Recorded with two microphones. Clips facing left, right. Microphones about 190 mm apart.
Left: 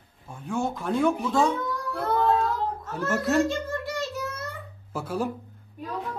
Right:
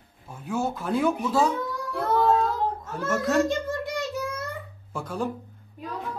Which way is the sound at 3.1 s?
Centre (ahead or behind).